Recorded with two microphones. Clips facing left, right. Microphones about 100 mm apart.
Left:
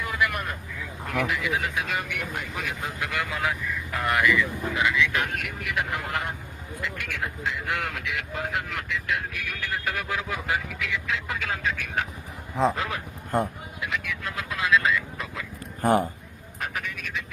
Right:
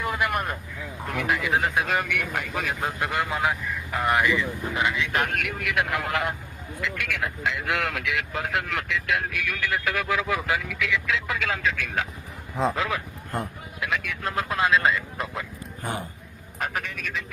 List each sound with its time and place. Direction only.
0.0 s vehicle: 35° right (ahead or behind)
1.3 s speech: 40° right (ahead or behind)
3.1 s speech: 30° right (ahead or behind)
5.2 s speech: 70° right (ahead or behind); by 11.7 s 90° right
13.7 s speech: 70° right (ahead or behind)
14.3 s speech: 40° right (ahead or behind)
15.8 s a man's voice: 40° left (ahead or behind)
16.6 s speech: 45° right (ahead or behind)